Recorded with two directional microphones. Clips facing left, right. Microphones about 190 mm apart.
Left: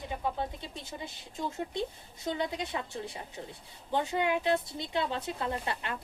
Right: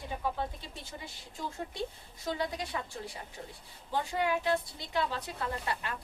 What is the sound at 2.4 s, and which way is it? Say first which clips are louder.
Speech: left 2 dB; 25° left (ahead or behind).